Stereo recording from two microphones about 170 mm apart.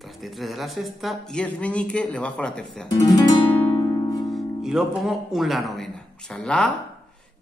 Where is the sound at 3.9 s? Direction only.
25° left (ahead or behind).